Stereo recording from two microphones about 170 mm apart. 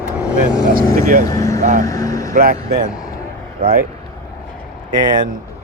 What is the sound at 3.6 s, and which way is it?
Speech, 60° right (ahead or behind).